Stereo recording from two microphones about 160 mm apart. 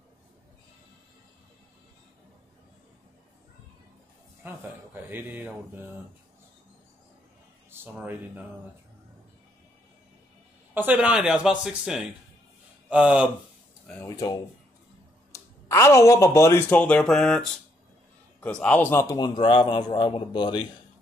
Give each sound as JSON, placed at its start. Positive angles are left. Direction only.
{"t": 4.4, "sound": "speech", "side_deg": -10}
{"t": 7.8, "sound": "speech", "side_deg": -15}
{"t": 10.7, "sound": "speech", "side_deg": -10}
{"t": 14.0, "sound": "a man's voice", "side_deg": 20}